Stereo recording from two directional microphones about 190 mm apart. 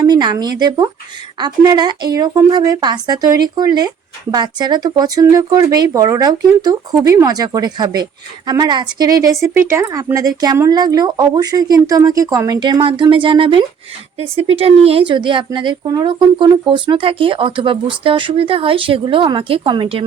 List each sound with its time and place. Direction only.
0.1 s a woman's voice: 20° right (ahead or behind)